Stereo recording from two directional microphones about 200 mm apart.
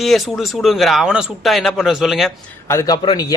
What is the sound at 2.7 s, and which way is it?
Speech, 15° left (ahead or behind).